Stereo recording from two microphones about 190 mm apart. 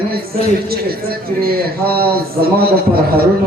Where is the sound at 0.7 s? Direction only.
55° right (ahead or behind).